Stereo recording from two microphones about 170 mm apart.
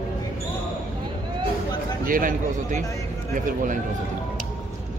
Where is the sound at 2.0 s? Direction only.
55° right (ahead or behind).